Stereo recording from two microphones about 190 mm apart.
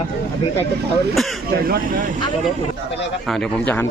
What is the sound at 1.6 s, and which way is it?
Speech, 50° right (ahead or behind).